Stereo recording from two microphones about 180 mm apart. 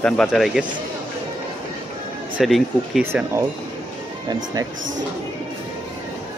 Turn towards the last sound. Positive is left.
turn(degrees=-20)  # may be behind; listen again after turning